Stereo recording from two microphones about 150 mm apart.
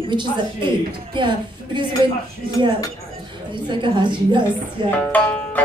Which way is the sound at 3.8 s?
30° right (ahead or behind).